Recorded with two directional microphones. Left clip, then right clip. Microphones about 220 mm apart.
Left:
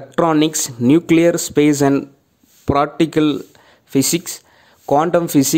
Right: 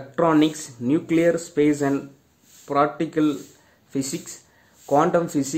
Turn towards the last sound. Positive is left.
turn(degrees=45)  # may be behind; listen again after turning